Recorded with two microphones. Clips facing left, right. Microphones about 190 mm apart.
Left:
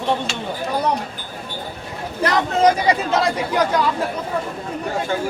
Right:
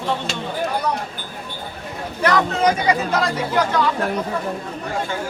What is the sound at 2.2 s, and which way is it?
Speech, 30° left (ahead or behind).